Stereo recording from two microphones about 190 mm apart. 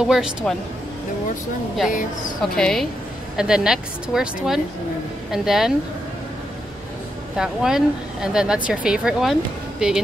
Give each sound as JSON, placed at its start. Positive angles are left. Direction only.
{"t": 0.0, "sound": "speech", "side_deg": -5}
{"t": 1.9, "sound": "speech", "side_deg": 45}
{"t": 2.4, "sound": "speech", "side_deg": 0}
{"t": 7.3, "sound": "speech", "side_deg": -5}